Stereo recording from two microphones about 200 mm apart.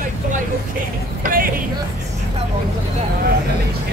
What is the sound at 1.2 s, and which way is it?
Speech, 45° right (ahead or behind).